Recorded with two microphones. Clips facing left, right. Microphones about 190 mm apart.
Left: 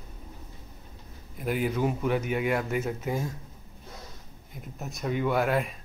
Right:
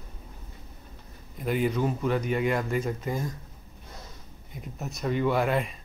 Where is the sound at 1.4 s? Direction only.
5° left (ahead or behind).